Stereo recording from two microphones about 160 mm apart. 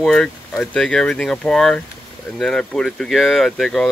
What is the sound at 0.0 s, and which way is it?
Speech, 5° left (ahead or behind).